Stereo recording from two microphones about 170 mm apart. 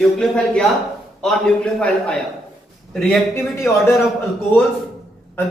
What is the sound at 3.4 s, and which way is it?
Speech, 15° left (ahead or behind).